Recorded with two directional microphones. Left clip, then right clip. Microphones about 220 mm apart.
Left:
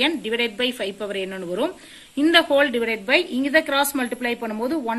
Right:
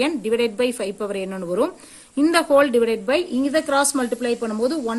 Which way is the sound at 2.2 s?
55° right (ahead or behind).